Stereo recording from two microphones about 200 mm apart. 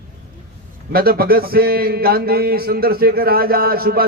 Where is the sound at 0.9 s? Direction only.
50° right (ahead or behind).